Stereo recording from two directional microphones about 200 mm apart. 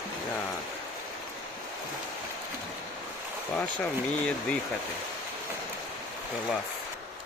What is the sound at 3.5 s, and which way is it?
Speech, 5° left (ahead or behind).